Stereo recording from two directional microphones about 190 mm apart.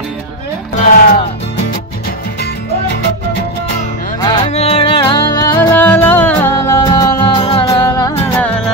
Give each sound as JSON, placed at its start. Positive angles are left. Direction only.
{"t": 0.7, "sound": "music", "side_deg": 45}
{"t": 4.2, "sound": "music", "side_deg": 20}
{"t": 4.5, "sound": "music", "side_deg": 35}
{"t": 5.6, "sound": "music", "side_deg": 10}
{"t": 7.6, "sound": "music", "side_deg": 15}